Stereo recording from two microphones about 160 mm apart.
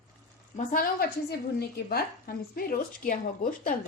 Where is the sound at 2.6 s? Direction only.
60° left (ahead or behind).